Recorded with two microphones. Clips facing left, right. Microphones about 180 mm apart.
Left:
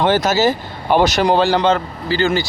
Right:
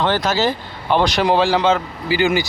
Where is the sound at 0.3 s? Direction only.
10° left (ahead or behind).